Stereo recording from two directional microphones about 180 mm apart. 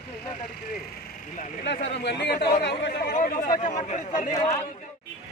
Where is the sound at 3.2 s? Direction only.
50° left (ahead or behind).